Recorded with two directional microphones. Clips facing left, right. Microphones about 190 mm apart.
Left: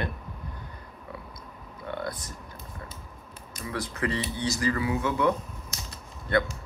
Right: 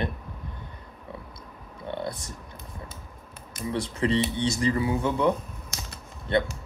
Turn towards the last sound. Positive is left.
turn(degrees=-25)  # may be behind; listen again after turning